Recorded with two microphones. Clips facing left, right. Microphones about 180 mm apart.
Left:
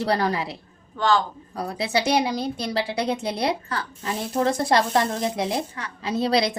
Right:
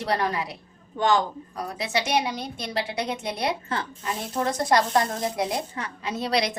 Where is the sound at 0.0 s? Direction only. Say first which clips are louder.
Left 3 dB; 35° left (ahead or behind).